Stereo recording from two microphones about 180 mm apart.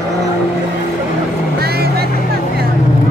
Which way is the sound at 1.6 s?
60° right (ahead or behind).